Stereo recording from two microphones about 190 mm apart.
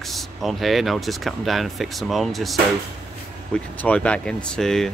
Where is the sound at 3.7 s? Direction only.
5° left (ahead or behind).